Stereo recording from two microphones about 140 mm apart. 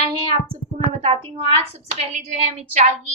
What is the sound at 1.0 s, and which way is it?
A woman's voice, 45° right (ahead or behind).